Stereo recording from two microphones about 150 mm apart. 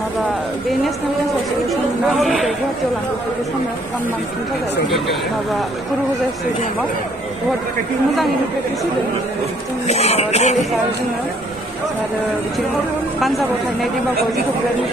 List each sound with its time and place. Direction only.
1.7 s speech: centre (ahead or behind)
4.8 s speech: centre (ahead or behind)
9.8 s speech: 45° left (ahead or behind)